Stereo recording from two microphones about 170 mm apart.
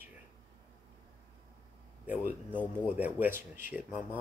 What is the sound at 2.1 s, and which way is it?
Speech, 10° right (ahead or behind).